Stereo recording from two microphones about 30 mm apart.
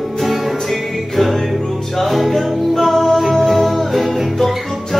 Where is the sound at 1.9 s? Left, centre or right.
Centre.